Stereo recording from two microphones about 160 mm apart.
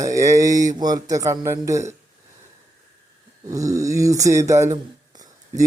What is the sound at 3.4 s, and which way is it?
A man's voice, 20° right (ahead or behind).